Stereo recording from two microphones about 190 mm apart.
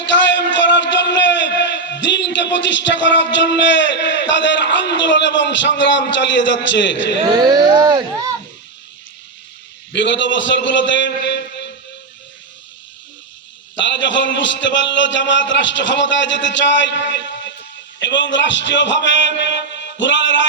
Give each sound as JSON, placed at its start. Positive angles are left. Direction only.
{"t": 0.1, "sound": "a man's voice", "side_deg": 70}
{"t": 7.2, "sound": "speech", "side_deg": -25}
{"t": 9.9, "sound": "a man's voice", "side_deg": 70}
{"t": 13.7, "sound": "a man's voice", "side_deg": 75}